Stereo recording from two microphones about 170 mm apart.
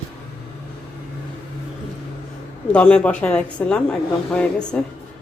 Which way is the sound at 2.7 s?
5° left (ahead or behind).